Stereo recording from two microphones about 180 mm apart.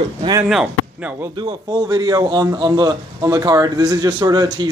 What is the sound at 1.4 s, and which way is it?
A man's voice, 20° right (ahead or behind).